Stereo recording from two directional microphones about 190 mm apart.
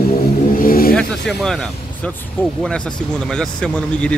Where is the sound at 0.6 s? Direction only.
50° left (ahead or behind).